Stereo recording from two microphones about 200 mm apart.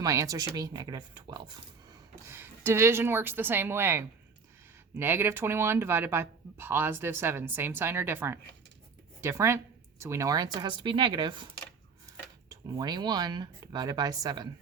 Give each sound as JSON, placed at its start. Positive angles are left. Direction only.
{"t": 0.0, "sound": "speech", "side_deg": -15}
{"t": 12.5, "sound": "speech", "side_deg": -20}